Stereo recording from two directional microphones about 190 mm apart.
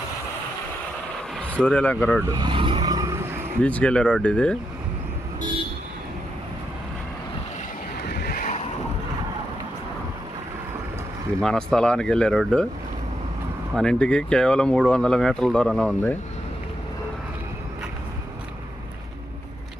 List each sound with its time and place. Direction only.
1.5 s speech: 5° left (ahead or behind)
2.2 s vehicle: 20° right (ahead or behind)
3.6 s speech: 5° left (ahead or behind)
8.0 s a sound: 60° left (ahead or behind)
11.3 s speech: 5° left (ahead or behind)
13.7 s speech: 5° left (ahead or behind)